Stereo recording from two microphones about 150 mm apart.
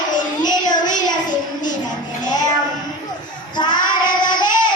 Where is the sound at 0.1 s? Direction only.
30° left (ahead or behind).